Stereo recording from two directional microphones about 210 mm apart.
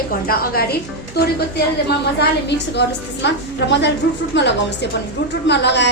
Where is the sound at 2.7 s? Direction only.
55° left (ahead or behind).